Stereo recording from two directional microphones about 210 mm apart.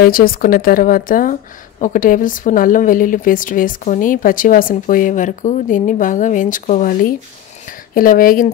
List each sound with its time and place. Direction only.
0.0 s a woman's voice: 45° left (ahead or behind)